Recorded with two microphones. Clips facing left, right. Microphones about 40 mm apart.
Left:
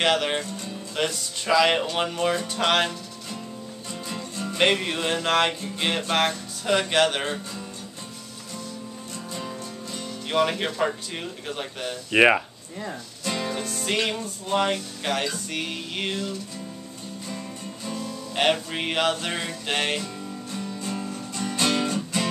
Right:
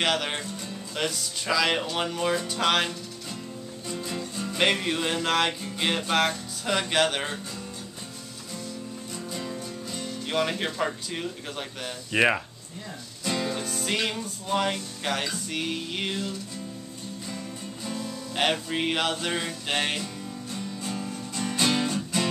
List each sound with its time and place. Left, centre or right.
0.0 s music: centre
3.9 s music: centre
9.3 s speech: centre
13.2 s music: centre
17.8 s music: centre
21.1 s music: centre